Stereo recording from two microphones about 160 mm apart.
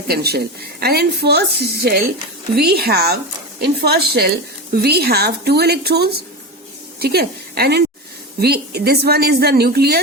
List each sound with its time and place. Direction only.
0.1 s a woman's voice: 80° right